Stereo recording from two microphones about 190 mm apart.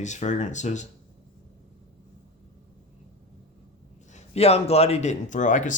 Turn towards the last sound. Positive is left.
turn(degrees=40)  # may be behind; listen again after turning